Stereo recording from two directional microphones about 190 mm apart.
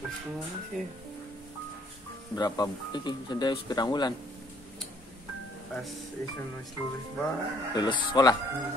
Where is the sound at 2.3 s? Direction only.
20° left (ahead or behind).